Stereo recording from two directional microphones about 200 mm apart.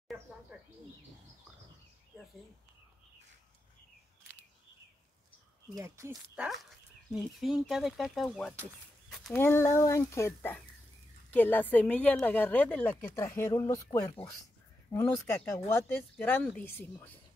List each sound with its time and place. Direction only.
5.8 s a woman's voice: 15° right (ahead or behind); by 17.2 s 10° left (ahead or behind)